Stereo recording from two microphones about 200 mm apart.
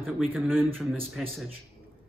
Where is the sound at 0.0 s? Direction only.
5° right (ahead or behind).